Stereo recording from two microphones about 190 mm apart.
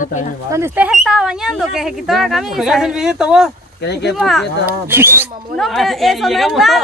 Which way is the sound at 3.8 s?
60° left (ahead or behind).